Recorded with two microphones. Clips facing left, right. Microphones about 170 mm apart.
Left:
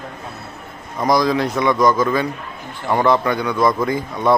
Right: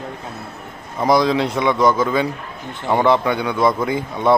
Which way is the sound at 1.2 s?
25° right (ahead or behind).